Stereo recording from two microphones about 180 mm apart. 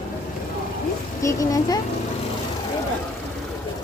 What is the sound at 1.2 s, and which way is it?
Speech, 20° left (ahead or behind).